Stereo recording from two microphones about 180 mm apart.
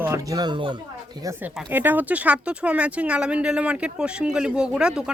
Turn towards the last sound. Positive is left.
turn(degrees=-5)  # may be behind; listen again after turning